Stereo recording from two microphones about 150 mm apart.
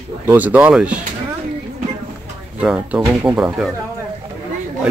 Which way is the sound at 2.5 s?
5° right (ahead or behind).